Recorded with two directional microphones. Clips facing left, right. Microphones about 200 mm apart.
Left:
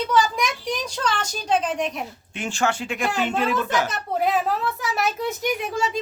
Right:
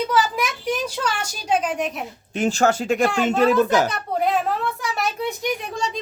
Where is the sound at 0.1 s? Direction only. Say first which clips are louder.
Even; 5° right (ahead or behind).